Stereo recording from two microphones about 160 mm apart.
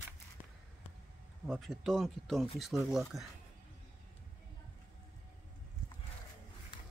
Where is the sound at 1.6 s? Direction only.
Centre (ahead or behind).